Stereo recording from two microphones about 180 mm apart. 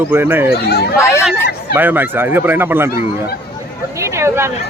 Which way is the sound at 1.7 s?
10° right (ahead or behind).